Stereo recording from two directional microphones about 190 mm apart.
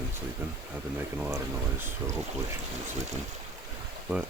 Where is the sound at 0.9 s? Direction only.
10° right (ahead or behind).